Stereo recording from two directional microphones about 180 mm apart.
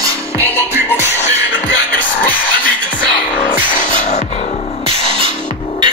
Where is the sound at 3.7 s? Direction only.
45° left (ahead or behind).